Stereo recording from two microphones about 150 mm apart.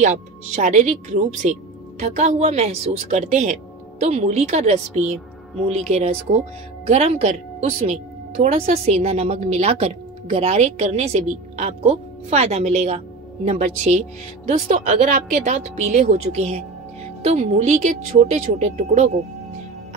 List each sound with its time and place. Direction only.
0.0 s speech: 55° right (ahead or behind)
14.7 s speech: 60° right (ahead or behind)